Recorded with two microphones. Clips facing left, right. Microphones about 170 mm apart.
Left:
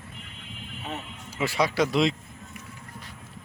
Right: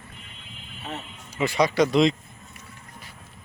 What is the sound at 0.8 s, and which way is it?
Music, 15° left (ahead or behind).